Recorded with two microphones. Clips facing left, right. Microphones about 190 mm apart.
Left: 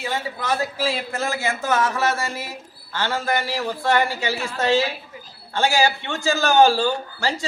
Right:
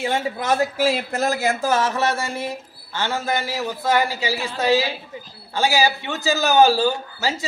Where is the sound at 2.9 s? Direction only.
10° right (ahead or behind).